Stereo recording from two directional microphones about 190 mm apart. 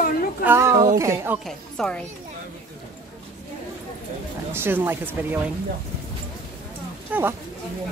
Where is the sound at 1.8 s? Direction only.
Centre (ahead or behind).